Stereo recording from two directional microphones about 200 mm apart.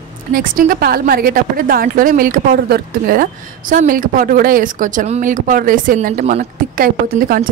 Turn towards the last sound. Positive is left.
turn(degrees=-45)  # may be behind; listen again after turning